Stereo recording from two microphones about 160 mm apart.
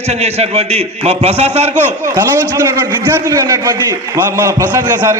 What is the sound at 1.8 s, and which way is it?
A man's voice, 15° right (ahead or behind).